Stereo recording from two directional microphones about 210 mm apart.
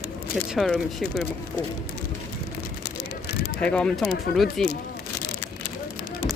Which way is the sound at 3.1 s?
50° left (ahead or behind).